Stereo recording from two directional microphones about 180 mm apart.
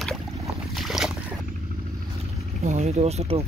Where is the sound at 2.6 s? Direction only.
40° right (ahead or behind).